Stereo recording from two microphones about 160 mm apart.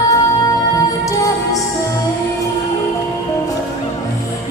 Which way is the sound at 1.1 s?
20° left (ahead or behind).